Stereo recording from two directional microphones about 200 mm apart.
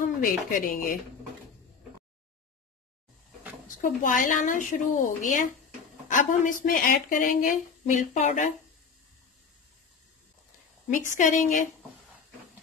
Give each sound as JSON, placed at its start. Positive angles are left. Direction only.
{"t": 0.0, "sound": "speech", "side_deg": 40}
{"t": 3.6, "sound": "a woman's voice", "side_deg": 40}
{"t": 10.9, "sound": "a woman's voice", "side_deg": 40}